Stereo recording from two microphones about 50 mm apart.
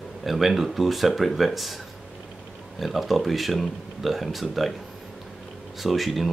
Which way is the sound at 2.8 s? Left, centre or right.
Centre.